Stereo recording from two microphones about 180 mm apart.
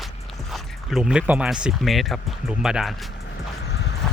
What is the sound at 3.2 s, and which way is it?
Vehicle, 70° left (ahead or behind).